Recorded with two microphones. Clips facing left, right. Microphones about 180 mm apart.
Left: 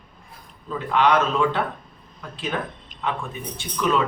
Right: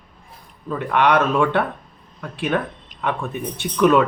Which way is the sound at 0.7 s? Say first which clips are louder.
Right 2 dB; 60° right (ahead or behind).